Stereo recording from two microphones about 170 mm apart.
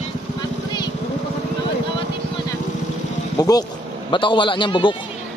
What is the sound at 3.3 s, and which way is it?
Boat, 20° left (ahead or behind).